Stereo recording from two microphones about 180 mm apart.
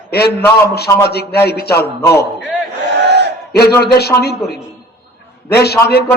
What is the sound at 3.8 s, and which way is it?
Speech, 65° left (ahead or behind).